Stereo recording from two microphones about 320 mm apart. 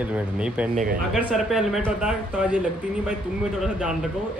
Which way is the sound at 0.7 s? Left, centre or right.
Right.